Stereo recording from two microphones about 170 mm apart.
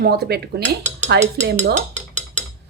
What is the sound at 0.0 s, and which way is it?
Speech, 65° right (ahead or behind).